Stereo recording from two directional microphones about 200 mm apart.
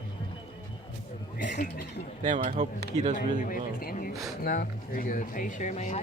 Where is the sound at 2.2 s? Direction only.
40° right (ahead or behind).